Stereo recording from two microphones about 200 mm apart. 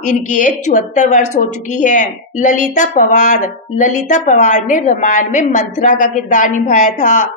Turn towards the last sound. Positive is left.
turn(degrees=40)  # may be behind; listen again after turning